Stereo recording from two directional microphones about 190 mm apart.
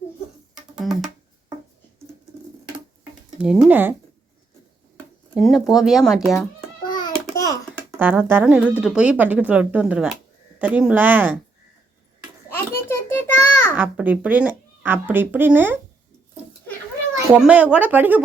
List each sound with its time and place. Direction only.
3.3 s a woman's voice: 5° right (ahead or behind)
5.3 s speech: centre (ahead or behind)
6.8 s a sound: 20° left (ahead or behind)
7.9 s a woman's voice: 10° right (ahead or behind)
12.5 s a sound: 10° left (ahead or behind)
13.7 s a woman's voice: 10° right (ahead or behind)
17.3 s a woman's voice: 5° right (ahead or behind)